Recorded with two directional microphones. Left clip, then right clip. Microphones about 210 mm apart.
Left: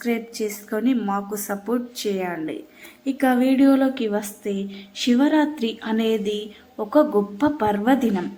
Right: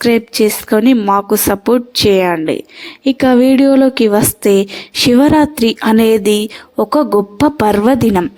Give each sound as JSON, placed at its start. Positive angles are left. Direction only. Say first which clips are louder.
{"t": 0.0, "sound": "a woman's voice", "louder": "right 14 dB", "side_deg": -40}